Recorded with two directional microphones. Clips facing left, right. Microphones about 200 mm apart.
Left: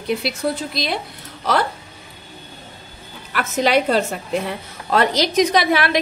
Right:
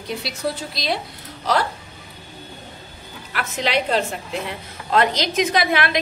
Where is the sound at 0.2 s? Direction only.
55° left (ahead or behind).